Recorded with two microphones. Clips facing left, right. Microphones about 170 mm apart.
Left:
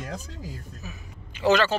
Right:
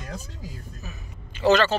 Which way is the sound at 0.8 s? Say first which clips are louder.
Even; 10° left (ahead or behind).